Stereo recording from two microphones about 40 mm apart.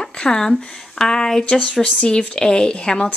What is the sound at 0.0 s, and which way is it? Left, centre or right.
A woman's voice, centre.